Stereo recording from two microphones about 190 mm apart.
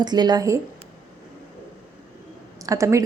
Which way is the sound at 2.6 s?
15° right (ahead or behind).